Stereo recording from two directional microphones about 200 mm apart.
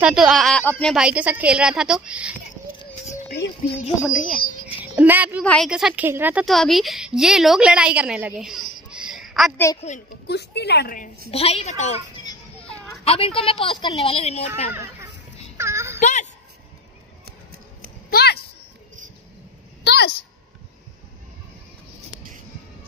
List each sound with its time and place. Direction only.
0.0 s a woman's voice: centre (ahead or behind)
0.9 s a woman's voice: 5° right (ahead or behind)
3.3 s music: 60° left (ahead or behind)
4.7 s speech: 10° right (ahead or behind)
5.4 s a woman's voice: 5° left (ahead or behind)
9.8 s a woman's voice: 35° left (ahead or behind)
10.2 s a woman's voice: 55° left (ahead or behind)
11.2 s a woman's voice: 30° left (ahead or behind)
13.0 s a woman's voice: 30° left (ahead or behind)
15.5 s child singing: 15° right (ahead or behind)
16.0 s a sound: 40° left (ahead or behind)
17.2 s a sound: 50° right (ahead or behind)
18.1 s a sound: 50° left (ahead or behind)
19.8 s a sound: 55° left (ahead or behind)